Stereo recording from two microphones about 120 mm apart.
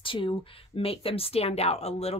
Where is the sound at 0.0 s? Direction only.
45° left (ahead or behind).